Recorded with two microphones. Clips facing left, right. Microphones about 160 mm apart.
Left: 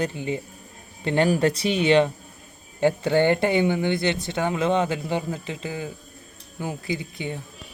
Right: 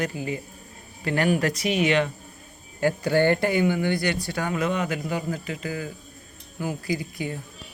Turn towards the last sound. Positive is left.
turn(degrees=25)  # may be behind; listen again after turning